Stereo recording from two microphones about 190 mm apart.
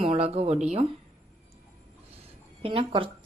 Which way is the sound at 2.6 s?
25° right (ahead or behind).